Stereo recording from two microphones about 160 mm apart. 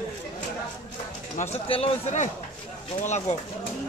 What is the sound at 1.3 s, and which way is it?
Speech, 40° left (ahead or behind).